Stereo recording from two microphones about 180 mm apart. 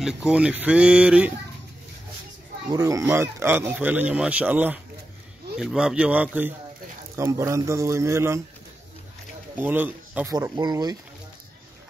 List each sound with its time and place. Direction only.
0.0 s speech: 5° right (ahead or behind)
2.7 s speech: 15° right (ahead or behind)
9.6 s speech: 10° right (ahead or behind)
10.3 s speech: 20° right (ahead or behind)